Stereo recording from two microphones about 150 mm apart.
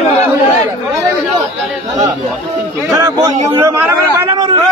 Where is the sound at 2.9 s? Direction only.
20° right (ahead or behind).